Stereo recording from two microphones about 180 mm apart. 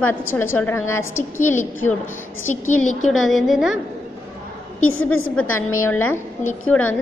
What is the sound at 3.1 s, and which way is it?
Speech, centre (ahead or behind).